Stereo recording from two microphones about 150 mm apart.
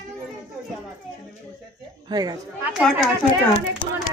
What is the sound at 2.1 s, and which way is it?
Speech, 25° right (ahead or behind).